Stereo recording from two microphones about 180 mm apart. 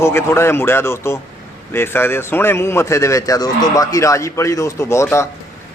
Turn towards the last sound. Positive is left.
turn(degrees=15)  # may be behind; listen again after turning